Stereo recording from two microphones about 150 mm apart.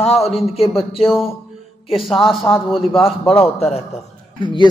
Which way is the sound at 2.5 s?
20° left (ahead or behind).